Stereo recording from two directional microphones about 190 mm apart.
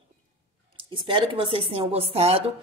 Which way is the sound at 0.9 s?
25° right (ahead or behind).